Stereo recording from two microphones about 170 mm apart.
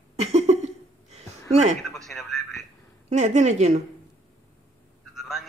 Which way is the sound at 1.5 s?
45° right (ahead or behind).